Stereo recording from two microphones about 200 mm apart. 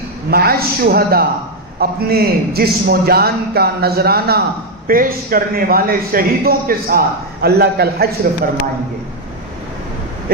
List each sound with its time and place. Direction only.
0.3 s a man's voice: 50° right (ahead or behind)